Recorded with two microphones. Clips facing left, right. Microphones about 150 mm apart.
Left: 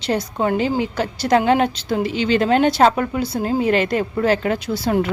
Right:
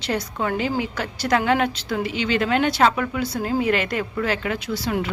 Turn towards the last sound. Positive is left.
turn(degrees=45)  # may be behind; listen again after turning